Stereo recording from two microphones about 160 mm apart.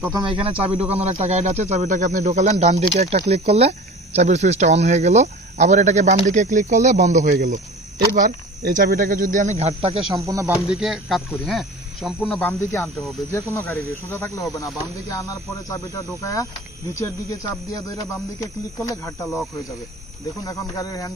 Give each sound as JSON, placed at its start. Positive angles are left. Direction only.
{"t": 0.0, "sound": "speech", "side_deg": -25}
{"t": 7.9, "sound": "speech", "side_deg": -65}
{"t": 10.2, "sound": "speech", "side_deg": -20}
{"t": 10.7, "sound": "speech", "side_deg": 0}
{"t": 12.4, "sound": "speech", "side_deg": 15}
{"t": 20.4, "sound": "speech", "side_deg": 20}